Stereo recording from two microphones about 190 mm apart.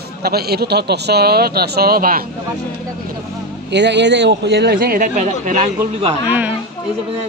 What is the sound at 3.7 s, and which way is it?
Speech, 65° right (ahead or behind).